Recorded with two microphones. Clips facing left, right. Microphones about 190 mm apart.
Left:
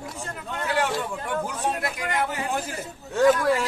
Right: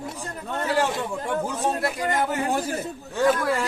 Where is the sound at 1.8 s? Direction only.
35° right (ahead or behind).